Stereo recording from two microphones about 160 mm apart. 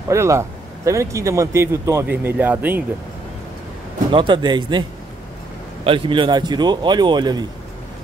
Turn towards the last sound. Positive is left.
turn(degrees=-25)  # may be behind; listen again after turning